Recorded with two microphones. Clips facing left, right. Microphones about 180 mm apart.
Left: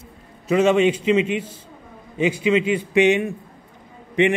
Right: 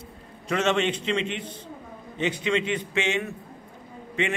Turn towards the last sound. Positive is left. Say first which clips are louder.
# left 9 dB
turn(degrees=15)  # may be behind; listen again after turning